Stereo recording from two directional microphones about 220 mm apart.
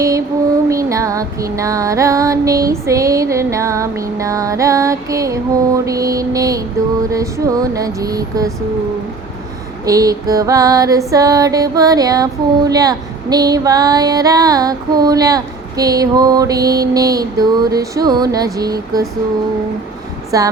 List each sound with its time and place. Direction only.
0.7 s music: 15° right (ahead or behind)
9.8 s music: 15° right (ahead or behind)
20.3 s music: 15° right (ahead or behind)